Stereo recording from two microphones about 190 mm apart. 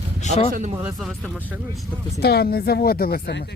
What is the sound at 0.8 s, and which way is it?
Speech, centre (ahead or behind).